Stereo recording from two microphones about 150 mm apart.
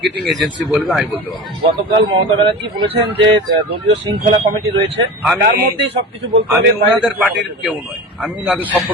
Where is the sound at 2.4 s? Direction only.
30° right (ahead or behind).